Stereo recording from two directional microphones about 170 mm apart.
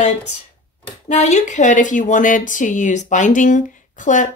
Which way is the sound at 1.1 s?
45° left (ahead or behind).